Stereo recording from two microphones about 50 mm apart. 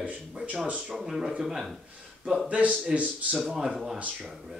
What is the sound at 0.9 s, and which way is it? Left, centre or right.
Speech, centre.